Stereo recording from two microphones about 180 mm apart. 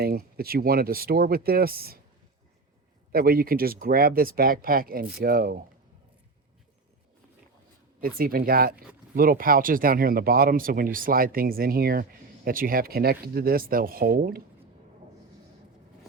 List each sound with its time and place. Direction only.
0.0 s speech: 55° right (ahead or behind)
3.1 s speech: 55° right (ahead or behind)
8.0 s speech: 55° right (ahead or behind)